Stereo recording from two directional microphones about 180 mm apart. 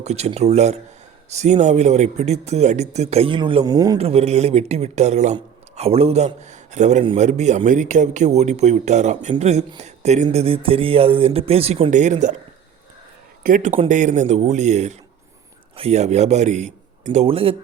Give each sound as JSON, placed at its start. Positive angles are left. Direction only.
{"t": 0.0, "sound": "speech", "side_deg": -35}
{"t": 3.9, "sound": "speech", "side_deg": -35}
{"t": 13.4, "sound": "a man's voice", "side_deg": -45}